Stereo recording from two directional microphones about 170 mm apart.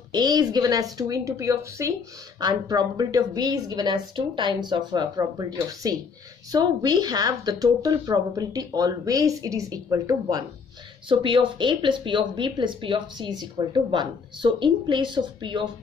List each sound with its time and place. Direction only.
0.1 s speech: 25° right (ahead or behind)